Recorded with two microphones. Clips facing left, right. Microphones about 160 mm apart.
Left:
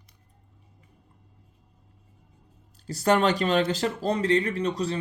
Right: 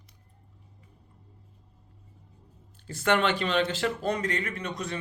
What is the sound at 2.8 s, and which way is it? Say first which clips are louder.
Speech: left 3 dB; 35° left (ahead or behind).